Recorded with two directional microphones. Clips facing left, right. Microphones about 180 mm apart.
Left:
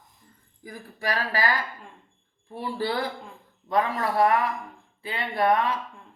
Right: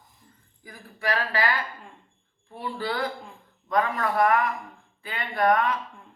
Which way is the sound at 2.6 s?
35° left (ahead or behind).